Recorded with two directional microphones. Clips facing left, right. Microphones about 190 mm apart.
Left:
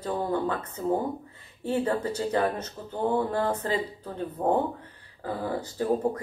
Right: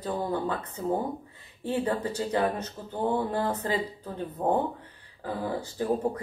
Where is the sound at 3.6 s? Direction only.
35° left (ahead or behind).